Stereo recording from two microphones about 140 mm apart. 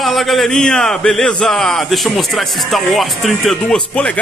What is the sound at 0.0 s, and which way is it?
Speech, centre (ahead or behind).